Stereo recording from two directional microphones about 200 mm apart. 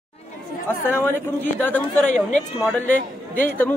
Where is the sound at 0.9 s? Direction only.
10° left (ahead or behind).